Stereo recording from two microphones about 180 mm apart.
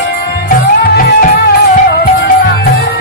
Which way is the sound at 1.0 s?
60° left (ahead or behind).